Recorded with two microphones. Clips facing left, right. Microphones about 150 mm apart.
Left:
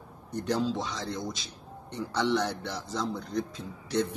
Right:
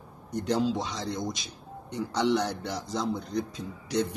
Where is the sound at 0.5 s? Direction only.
15° right (ahead or behind).